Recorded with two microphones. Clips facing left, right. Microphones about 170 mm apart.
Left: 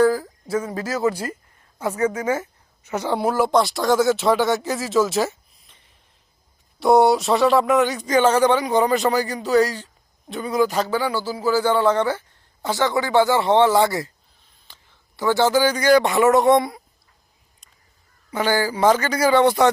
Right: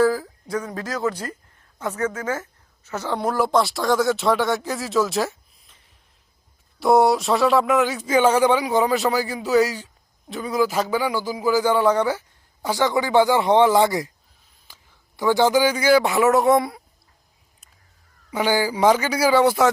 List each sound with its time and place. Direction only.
0.0 s a woman's voice: centre (ahead or behind)
18.3 s speech: 10° right (ahead or behind)